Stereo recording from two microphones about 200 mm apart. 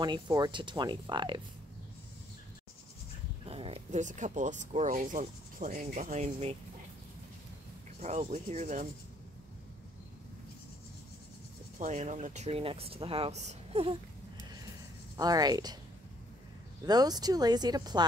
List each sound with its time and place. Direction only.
0.0 s speech: 20° right (ahead or behind)
3.4 s speech: 30° right (ahead or behind)
8.0 s speech: 35° right (ahead or behind)
11.8 s speech: 40° right (ahead or behind)
15.1 s speech: 20° right (ahead or behind)
16.8 s speech: 20° right (ahead or behind)